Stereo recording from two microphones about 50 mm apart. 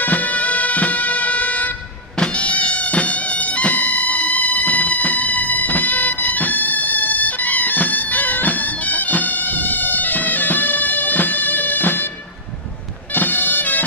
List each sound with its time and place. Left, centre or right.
0.0 s music: left
13.1 s bagpipes: left